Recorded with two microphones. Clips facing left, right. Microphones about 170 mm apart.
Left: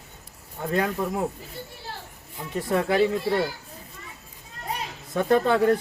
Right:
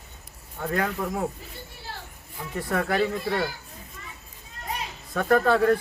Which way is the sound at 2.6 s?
25° left (ahead or behind).